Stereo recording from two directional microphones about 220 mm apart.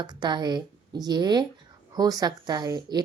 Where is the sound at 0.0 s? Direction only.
20° right (ahead or behind).